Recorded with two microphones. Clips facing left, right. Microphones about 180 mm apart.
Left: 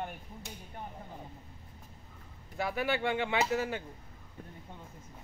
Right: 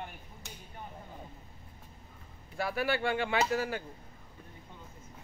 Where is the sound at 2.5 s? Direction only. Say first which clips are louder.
Even; 20° left (ahead or behind).